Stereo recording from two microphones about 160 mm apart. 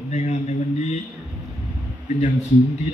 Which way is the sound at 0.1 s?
45° left (ahead or behind).